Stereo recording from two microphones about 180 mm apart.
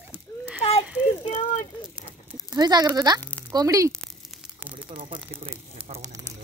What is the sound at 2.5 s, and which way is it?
Speech, 25° right (ahead or behind).